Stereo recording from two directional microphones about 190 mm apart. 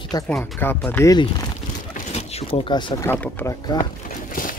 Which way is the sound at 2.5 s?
25° left (ahead or behind).